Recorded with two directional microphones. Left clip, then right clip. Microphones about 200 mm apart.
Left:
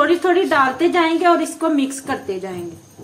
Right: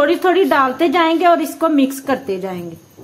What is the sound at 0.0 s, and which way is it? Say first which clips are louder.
A woman's voice: right 2 dB; 45° right (ahead or behind).